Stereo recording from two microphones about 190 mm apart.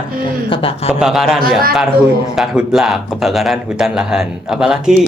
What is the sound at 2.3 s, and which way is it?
Speech, 5° right (ahead or behind).